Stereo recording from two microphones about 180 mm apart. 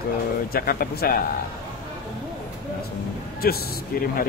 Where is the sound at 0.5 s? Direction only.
55° left (ahead or behind).